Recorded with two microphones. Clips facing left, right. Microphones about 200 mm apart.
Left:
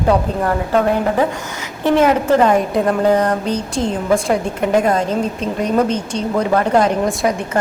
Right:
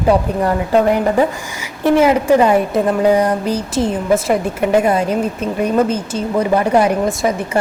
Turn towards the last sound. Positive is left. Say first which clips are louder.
# right 1 dB
turn(degrees=0)  # may be behind; listen again after turning